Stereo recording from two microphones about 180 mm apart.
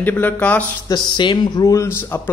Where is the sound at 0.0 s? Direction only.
10° left (ahead or behind).